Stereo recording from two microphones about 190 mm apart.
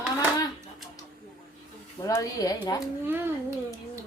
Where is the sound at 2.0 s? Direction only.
20° left (ahead or behind).